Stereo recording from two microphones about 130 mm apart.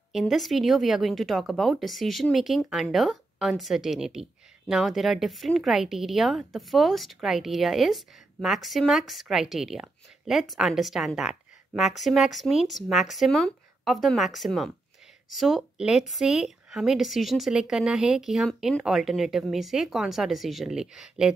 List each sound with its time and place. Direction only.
0.1 s speech: centre (ahead or behind)